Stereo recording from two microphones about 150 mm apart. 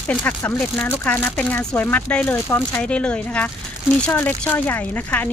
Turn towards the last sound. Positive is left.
turn(degrees=10)  # may be behind; listen again after turning